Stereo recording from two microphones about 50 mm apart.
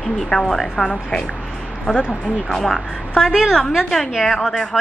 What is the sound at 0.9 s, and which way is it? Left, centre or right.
Speech, left.